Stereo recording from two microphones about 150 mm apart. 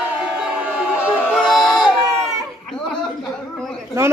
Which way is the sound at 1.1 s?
10° left (ahead or behind).